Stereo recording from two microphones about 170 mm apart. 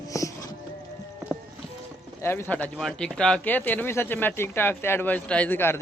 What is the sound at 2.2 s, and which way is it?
Speech, 15° left (ahead or behind).